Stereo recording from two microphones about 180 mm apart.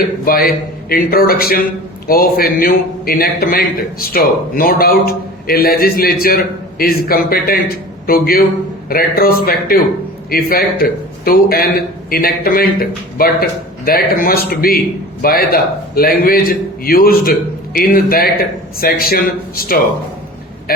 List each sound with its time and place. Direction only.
0.3 s a man's voice: 55° left (ahead or behind)